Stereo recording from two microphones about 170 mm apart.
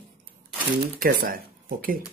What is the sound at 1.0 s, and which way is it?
Speech, 55° right (ahead or behind).